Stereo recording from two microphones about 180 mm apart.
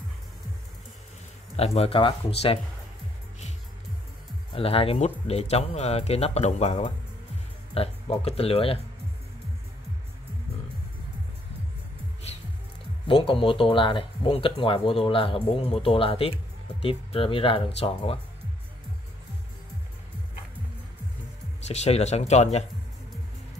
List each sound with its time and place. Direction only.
1.6 s speech: 35° left (ahead or behind)
4.6 s speech: 30° left (ahead or behind)
13.0 s speech: 30° left (ahead or behind)
21.6 s speech: 35° left (ahead or behind)